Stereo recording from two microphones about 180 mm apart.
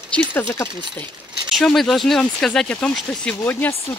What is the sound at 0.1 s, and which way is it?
Speech, 10° left (ahead or behind).